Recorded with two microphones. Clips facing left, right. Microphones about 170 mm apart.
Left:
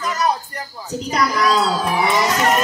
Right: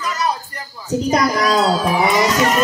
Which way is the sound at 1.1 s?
45° right (ahead or behind).